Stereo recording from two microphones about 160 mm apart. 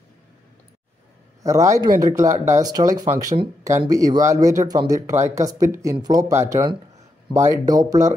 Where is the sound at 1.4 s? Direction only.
20° right (ahead or behind).